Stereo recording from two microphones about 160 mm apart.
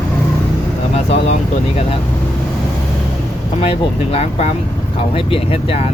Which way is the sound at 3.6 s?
35° left (ahead or behind).